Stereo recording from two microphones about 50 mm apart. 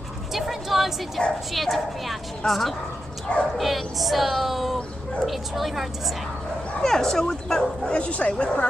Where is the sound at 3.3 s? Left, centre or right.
Left.